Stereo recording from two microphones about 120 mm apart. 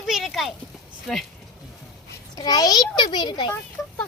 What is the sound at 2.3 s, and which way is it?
A child's voice, 30° left (ahead or behind).